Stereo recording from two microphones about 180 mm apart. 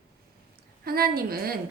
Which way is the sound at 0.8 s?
55° right (ahead or behind).